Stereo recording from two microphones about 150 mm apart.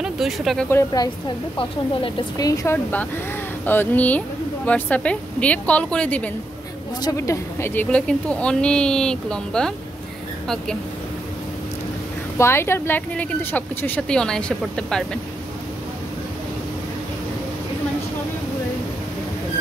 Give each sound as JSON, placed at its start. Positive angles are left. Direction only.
{"t": 0.0, "sound": "speech", "side_deg": 0}
{"t": 0.7, "sound": "speech", "side_deg": 20}
{"t": 1.6, "sound": "speech", "side_deg": 35}
{"t": 2.3, "sound": "speech", "side_deg": 25}
{"t": 7.0, "sound": "speech", "side_deg": 20}
{"t": 12.4, "sound": "speech", "side_deg": 15}